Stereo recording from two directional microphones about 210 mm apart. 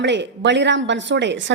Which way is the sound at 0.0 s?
55° right (ahead or behind).